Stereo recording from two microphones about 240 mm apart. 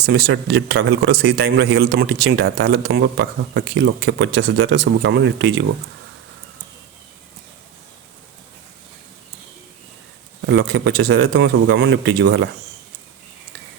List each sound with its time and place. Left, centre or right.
0.0 s speech: right
10.4 s speech: right